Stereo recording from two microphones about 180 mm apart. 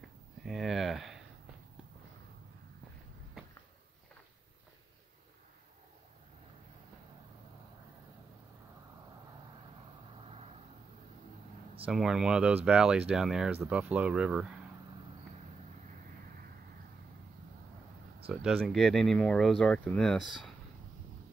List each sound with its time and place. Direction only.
0.5 s a sound: centre (ahead or behind)
10.2 s vehicle: 35° right (ahead or behind)
11.8 s speech: 5° right (ahead or behind)
18.3 s speech: 5° right (ahead or behind)